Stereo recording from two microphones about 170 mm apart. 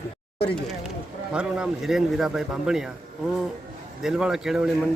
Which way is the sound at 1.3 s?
5° right (ahead or behind).